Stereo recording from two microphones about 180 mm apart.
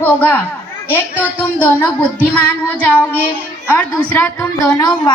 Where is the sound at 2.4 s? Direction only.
10° left (ahead or behind).